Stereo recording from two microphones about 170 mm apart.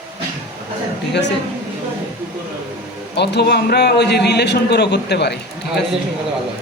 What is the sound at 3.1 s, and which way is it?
A man's voice, 80° left.